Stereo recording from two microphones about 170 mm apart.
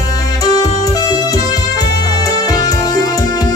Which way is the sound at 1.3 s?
20° left (ahead or behind).